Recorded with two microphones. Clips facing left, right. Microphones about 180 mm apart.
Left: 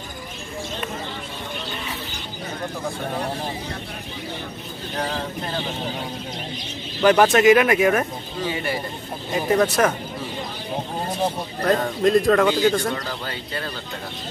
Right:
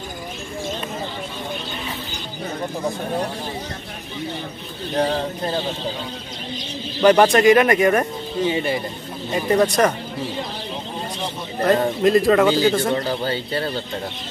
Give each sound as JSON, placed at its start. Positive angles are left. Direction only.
{"t": 4.9, "sound": "speech", "side_deg": -35}
{"t": 7.0, "sound": "speech", "side_deg": 0}
{"t": 8.4, "sound": "a man's voice", "side_deg": -25}
{"t": 9.3, "sound": "speech", "side_deg": 0}
{"t": 11.6, "sound": "speech", "side_deg": -5}
{"t": 12.9, "sound": "a man's voice", "side_deg": -30}